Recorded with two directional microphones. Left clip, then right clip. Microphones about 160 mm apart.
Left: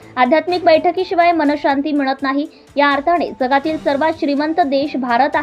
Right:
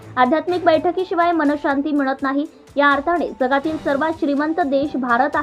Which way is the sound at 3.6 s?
5° left (ahead or behind).